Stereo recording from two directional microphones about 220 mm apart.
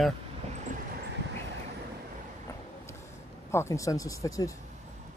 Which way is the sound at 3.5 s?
15° left (ahead or behind).